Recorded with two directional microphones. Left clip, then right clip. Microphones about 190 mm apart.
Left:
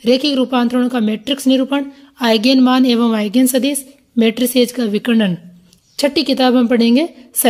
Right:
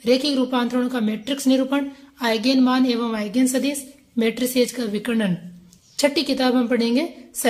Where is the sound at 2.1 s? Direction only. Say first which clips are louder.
Left 7 dB; 40° left (ahead or behind).